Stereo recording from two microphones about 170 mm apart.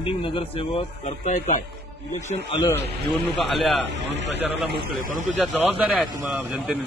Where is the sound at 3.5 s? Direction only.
Centre (ahead or behind).